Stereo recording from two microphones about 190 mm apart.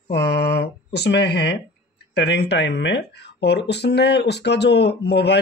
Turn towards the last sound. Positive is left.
turn(degrees=60)  # may be behind; listen again after turning